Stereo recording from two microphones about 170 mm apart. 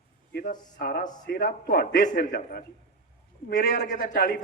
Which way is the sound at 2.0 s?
50° left (ahead or behind).